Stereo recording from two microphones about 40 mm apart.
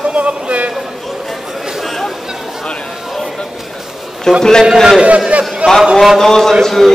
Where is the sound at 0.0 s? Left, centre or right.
Right.